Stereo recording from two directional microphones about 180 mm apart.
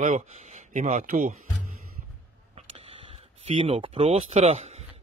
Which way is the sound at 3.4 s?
30° right (ahead or behind).